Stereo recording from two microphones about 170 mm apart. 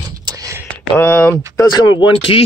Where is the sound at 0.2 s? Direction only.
25° right (ahead or behind).